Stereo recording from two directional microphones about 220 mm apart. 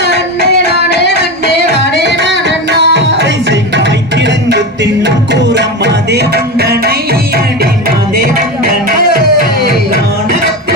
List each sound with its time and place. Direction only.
0.0 s music: 50° left (ahead or behind)
2.6 s music: 55° right (ahead or behind)